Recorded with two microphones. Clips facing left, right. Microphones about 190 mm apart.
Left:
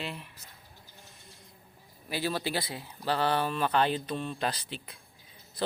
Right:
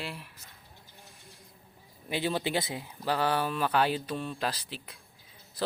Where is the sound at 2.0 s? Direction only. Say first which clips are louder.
Right 1 dB; 20° right (ahead or behind).